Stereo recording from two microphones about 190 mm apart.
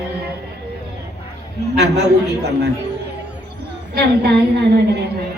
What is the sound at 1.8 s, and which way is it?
Speech, 60° right (ahead or behind).